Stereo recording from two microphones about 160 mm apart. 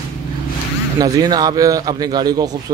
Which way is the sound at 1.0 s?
25° right (ahead or behind).